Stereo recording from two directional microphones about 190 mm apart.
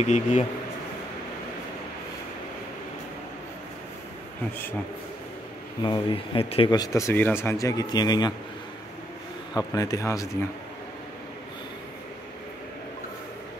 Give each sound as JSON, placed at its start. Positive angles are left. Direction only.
{"t": 0.0, "sound": "speech", "side_deg": 40}
{"t": 5.8, "sound": "speech", "side_deg": 25}
{"t": 9.6, "sound": "a man's voice", "side_deg": 20}